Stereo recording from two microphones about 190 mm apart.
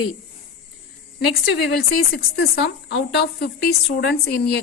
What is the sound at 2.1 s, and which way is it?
Speech, 55° left (ahead or behind).